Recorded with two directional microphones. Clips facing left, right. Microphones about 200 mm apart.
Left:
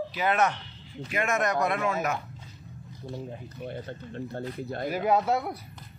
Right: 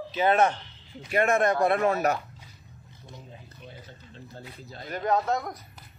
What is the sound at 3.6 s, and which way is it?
Speech, 60° left (ahead or behind).